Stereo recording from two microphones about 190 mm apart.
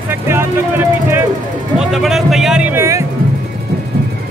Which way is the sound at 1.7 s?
Centre (ahead or behind).